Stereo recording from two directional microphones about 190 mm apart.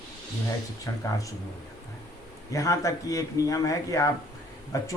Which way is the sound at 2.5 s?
15° left (ahead or behind).